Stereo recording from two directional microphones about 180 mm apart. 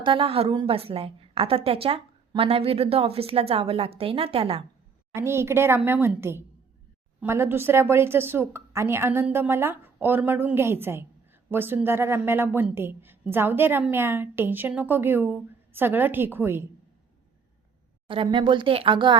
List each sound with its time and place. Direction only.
0.0 s a woman's voice: 30° right (ahead or behind)
5.1 s a woman's voice: 15° right (ahead or behind)
18.1 s speech: 30° right (ahead or behind)